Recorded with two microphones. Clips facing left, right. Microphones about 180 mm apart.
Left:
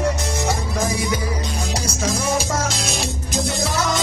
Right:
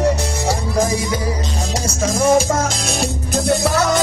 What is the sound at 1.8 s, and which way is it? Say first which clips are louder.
Music: right 8 dB; 45° right (ahead or behind).